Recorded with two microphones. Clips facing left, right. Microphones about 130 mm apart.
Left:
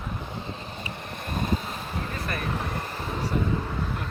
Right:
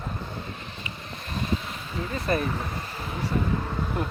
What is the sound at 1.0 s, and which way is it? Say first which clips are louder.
Vehicle: left 2 dB; 55° left (ahead or behind).